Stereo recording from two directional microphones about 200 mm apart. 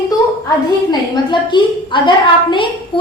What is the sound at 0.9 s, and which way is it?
A woman's voice, 20° left (ahead or behind).